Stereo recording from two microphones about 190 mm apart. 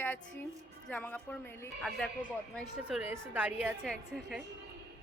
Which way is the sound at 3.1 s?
10° right (ahead or behind).